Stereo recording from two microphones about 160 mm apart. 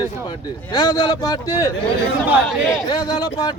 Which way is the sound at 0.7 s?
25° left (ahead or behind).